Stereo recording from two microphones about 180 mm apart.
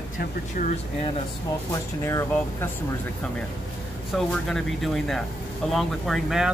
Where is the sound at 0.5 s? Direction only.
35° left (ahead or behind).